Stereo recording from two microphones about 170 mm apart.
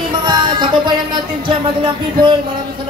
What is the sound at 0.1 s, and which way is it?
Music, 25° right (ahead or behind).